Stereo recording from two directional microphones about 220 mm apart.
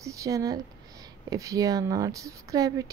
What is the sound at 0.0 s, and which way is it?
Speech, 15° right (ahead or behind).